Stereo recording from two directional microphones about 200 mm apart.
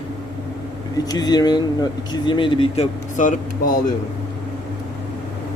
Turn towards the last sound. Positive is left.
turn(degrees=40)  # may be behind; listen again after turning